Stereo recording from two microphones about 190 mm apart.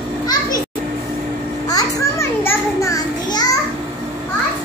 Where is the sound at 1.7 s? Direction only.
15° left (ahead or behind).